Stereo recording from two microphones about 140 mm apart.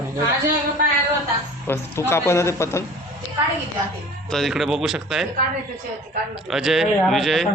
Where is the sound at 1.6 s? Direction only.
15° left (ahead or behind).